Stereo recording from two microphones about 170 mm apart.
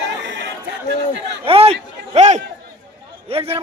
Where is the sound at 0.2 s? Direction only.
90° right.